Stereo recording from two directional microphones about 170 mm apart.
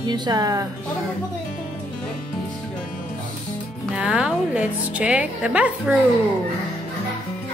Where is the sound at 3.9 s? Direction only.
5° right (ahead or behind).